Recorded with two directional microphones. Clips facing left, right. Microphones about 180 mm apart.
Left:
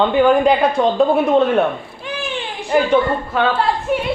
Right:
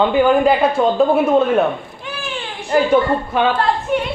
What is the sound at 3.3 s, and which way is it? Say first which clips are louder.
Speech: right 1 dB; 15° right (ahead or behind).